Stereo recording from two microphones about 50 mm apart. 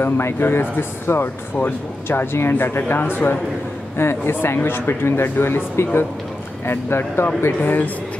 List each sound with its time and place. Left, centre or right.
0.0 s speech: left